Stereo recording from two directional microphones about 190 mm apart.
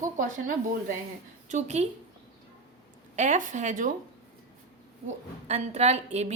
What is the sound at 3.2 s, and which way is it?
Speech, 40° right (ahead or behind).